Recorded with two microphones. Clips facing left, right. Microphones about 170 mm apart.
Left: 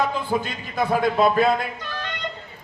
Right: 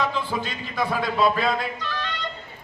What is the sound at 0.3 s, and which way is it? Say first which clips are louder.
A man's voice: left 4 dB; 50° left (ahead or behind).